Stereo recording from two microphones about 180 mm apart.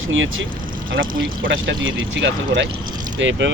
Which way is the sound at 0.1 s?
90° right.